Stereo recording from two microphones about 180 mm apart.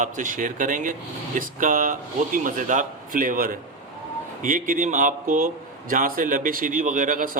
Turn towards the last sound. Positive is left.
turn(degrees=-50)  # may be behind; listen again after turning